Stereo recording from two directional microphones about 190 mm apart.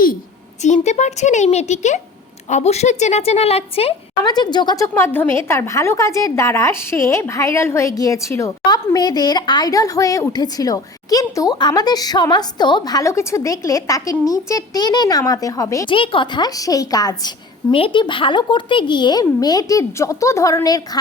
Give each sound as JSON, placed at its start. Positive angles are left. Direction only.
{"t": 0.6, "sound": "a woman's voice", "side_deg": 40}